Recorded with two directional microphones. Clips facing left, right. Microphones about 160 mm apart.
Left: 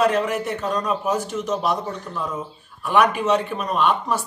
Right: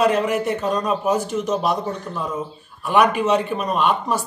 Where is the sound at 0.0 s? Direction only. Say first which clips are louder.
Right 2 dB; 5° right (ahead or behind).